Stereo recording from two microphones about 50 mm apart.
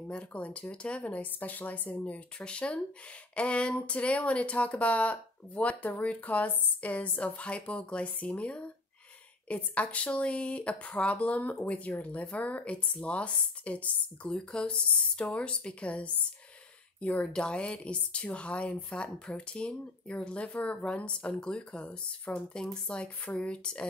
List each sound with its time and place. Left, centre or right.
0.1 s speech: left